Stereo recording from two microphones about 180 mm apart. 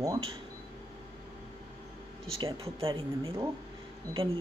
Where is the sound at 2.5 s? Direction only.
30° right (ahead or behind).